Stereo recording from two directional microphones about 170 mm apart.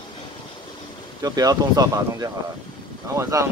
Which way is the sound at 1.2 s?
20° right (ahead or behind).